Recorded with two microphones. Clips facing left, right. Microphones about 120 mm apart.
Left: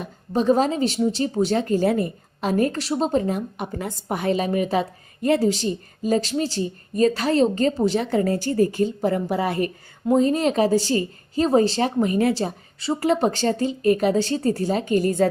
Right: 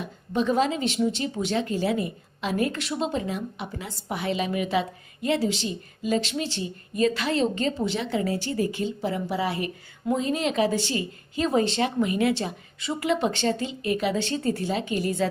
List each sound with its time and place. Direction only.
0.0 s speech: 40° left (ahead or behind)